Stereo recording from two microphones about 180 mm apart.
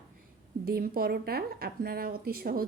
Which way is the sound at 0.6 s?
55° right (ahead or behind).